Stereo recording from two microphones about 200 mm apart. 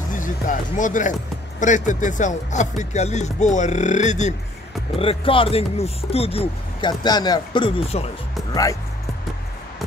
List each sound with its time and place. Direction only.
0.1 s speech: 40° left (ahead or behind)